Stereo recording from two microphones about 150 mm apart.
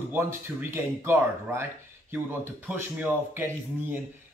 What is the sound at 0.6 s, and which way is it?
Speech, 15° right (ahead or behind).